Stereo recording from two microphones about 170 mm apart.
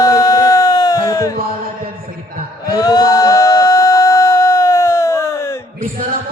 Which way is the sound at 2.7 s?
25° left (ahead or behind).